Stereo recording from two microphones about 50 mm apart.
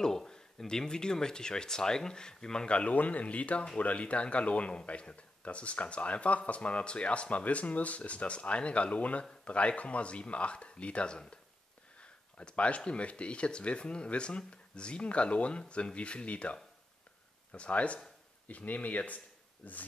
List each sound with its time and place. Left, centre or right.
0.0 s speech: centre; by 19.8 s left